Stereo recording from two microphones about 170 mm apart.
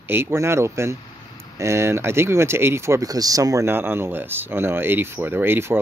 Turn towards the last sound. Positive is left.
turn(degrees=-15)  # may be behind; listen again after turning